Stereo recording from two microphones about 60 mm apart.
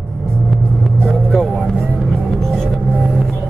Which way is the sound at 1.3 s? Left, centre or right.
Centre.